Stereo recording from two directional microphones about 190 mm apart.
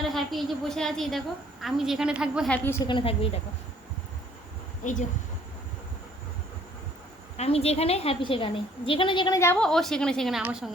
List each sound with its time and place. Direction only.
0.1 s a woman's voice: centre (ahead or behind)
2.6 s a woman's voice: 15° left (ahead or behind)
2.9 s speech: 30° left (ahead or behind)
4.8 s speech: 40° left (ahead or behind)
7.3 s speech: 30° left (ahead or behind)
9.4 s a woman's voice: 5° left (ahead or behind)